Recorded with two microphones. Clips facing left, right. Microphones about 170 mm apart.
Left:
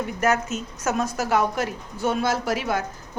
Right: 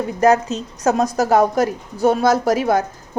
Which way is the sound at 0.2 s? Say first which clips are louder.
Right 9 dB; 35° right (ahead or behind).